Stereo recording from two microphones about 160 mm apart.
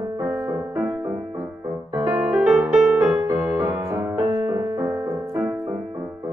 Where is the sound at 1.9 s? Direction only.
20° right (ahead or behind).